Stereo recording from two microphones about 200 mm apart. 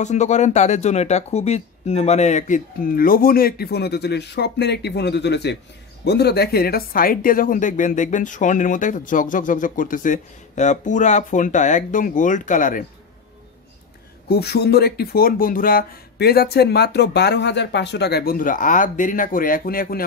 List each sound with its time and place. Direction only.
0.0 s speech: 35° left (ahead or behind)
14.3 s speech: 55° left (ahead or behind)